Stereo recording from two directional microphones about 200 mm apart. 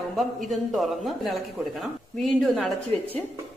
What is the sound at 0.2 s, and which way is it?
A man's voice, centre (ahead or behind).